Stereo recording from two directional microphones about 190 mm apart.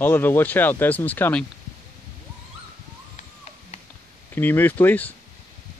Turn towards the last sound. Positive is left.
turn(degrees=10)  # may be behind; listen again after turning